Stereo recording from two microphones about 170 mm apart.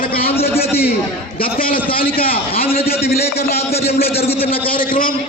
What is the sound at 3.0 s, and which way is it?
A man's voice, 65° left (ahead or behind).